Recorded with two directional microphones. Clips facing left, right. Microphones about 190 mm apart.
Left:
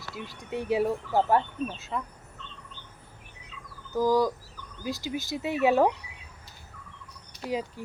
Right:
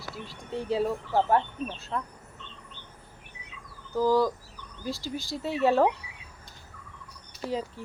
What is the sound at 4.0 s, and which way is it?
Speech, 15° left (ahead or behind).